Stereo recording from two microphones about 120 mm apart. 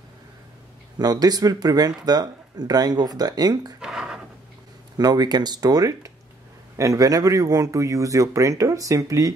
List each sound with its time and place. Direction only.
0.9 s speech: 35° right (ahead or behind)
3.8 s a sound: 5° right (ahead or behind)
4.9 s speech: 35° right (ahead or behind)